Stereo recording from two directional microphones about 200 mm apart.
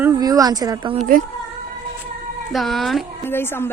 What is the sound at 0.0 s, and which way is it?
Speech, 20° right (ahead or behind).